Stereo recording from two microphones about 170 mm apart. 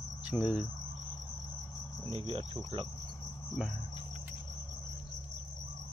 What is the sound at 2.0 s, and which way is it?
Cricket, 30° right (ahead or behind).